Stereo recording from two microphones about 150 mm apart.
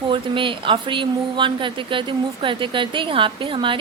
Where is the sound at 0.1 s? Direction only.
35° right (ahead or behind).